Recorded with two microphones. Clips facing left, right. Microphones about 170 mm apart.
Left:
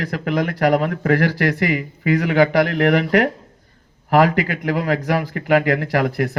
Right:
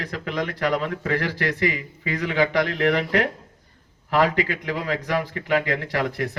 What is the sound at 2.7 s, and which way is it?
Speech, 50° left (ahead or behind).